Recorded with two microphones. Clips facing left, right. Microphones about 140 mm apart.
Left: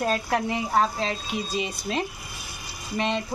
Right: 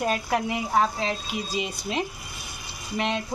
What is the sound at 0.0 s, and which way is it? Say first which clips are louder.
Speech: even; 10° right (ahead or behind).